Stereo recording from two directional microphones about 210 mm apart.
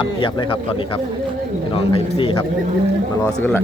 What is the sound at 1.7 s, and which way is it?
Speech, 25° left (ahead or behind).